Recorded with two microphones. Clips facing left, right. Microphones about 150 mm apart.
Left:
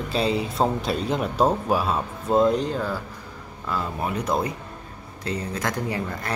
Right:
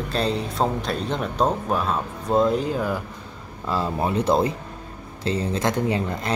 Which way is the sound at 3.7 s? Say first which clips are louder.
Right 4 dB; 30° right (ahead or behind).